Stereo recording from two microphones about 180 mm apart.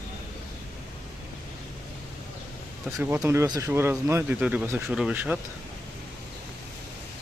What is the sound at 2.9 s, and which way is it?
Speech, 15° right (ahead or behind).